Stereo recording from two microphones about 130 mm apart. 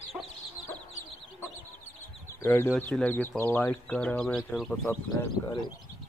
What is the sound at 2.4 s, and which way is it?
Speech, 20° left (ahead or behind).